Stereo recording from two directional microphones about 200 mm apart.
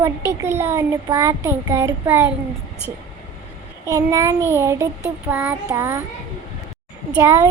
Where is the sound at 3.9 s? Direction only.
15° right (ahead or behind).